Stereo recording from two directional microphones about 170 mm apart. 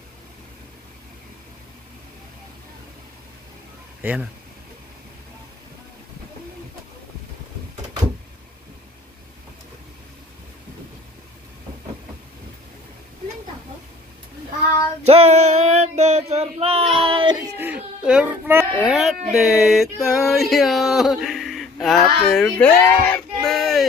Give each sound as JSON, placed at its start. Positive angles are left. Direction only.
{"t": 4.0, "sound": "speech", "side_deg": -10}
{"t": 15.0, "sound": "female singing", "side_deg": -35}
{"t": 17.6, "sound": "a sound", "side_deg": -10}